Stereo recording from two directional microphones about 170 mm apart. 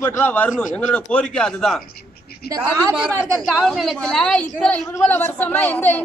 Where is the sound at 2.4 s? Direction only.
65° left (ahead or behind).